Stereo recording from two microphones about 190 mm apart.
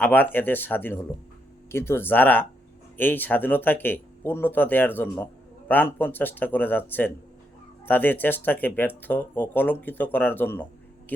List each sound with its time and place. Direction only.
0.0 s speech: 10° left (ahead or behind)